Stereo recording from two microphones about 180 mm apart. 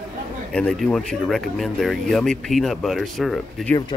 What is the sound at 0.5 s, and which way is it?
Speech, centre (ahead or behind).